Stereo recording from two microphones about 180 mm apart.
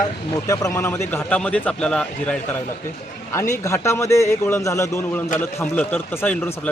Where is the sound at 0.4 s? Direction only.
20° left (ahead or behind).